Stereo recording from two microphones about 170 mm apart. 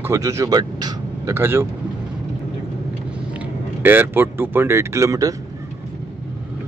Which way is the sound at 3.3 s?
10° right (ahead or behind).